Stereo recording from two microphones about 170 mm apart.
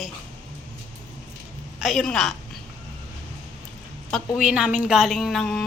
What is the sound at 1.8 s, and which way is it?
Speech, centre (ahead or behind).